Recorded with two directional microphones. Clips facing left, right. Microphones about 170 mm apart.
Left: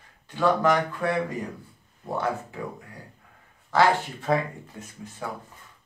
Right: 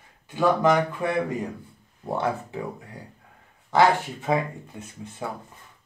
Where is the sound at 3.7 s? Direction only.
15° right (ahead or behind).